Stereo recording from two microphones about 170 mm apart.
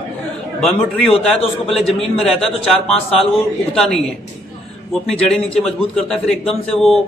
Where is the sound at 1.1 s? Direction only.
35° left (ahead or behind).